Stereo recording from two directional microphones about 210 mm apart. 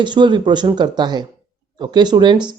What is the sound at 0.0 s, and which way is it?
Speech, 20° right (ahead or behind).